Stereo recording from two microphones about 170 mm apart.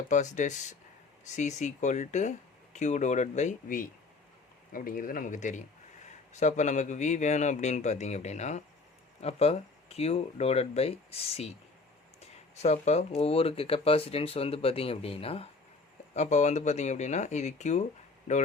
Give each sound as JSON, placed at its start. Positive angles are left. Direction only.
{"t": 0.1, "sound": "a man's voice", "side_deg": 45}